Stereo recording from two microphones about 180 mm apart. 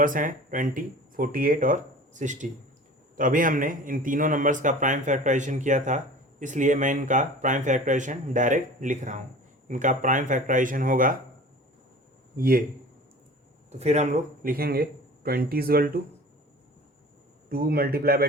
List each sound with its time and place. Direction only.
0.0 s speech: 50° right (ahead or behind)
12.4 s speech: 50° right (ahead or behind)
13.7 s speech: 35° right (ahead or behind); by 15.9 s 55° right (ahead or behind)
17.5 s a man's voice: 55° right (ahead or behind)